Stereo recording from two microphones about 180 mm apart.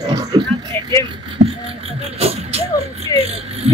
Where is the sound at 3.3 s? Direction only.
35° right (ahead or behind).